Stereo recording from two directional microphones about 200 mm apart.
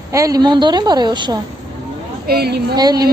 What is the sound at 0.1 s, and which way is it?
A woman's voice, 15° right (ahead or behind).